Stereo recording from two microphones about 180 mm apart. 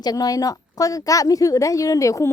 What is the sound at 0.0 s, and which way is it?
A woman's voice, 20° left (ahead or behind).